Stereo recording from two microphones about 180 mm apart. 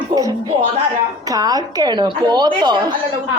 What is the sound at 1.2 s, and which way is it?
A woman's voice, 20° right (ahead or behind).